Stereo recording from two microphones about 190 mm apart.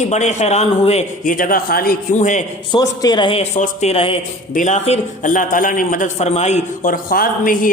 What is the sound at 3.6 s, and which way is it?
A man's voice, 40° left (ahead or behind).